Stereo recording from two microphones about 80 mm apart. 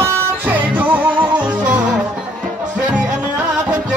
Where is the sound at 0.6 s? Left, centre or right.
Right.